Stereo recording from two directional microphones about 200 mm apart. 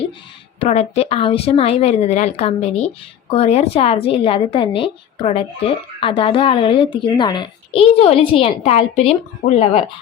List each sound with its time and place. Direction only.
0.6 s a woman's voice: 30° left (ahead or behind)